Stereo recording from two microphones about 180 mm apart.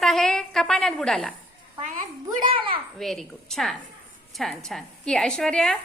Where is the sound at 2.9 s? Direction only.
Centre (ahead or behind).